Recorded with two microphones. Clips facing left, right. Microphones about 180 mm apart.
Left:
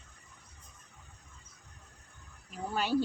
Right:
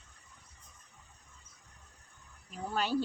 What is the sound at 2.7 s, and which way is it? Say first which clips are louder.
Speech: left 2 dB; 5° left (ahead or behind).